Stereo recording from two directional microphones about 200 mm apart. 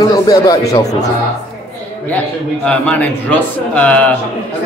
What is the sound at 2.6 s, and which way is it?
Speech, 5° left (ahead or behind).